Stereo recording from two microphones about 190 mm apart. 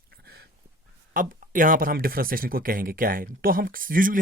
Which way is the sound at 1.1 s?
45° right (ahead or behind).